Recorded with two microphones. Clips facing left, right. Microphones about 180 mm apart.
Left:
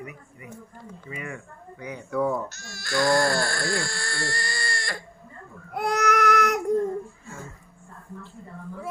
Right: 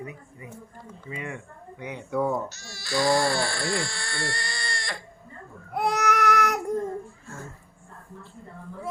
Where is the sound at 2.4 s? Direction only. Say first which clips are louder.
Even; centre (ahead or behind).